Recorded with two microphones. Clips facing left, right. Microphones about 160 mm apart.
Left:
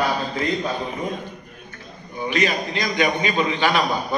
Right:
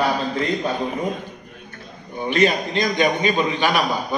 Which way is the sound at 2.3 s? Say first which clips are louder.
Right 4 dB; 25° right (ahead or behind).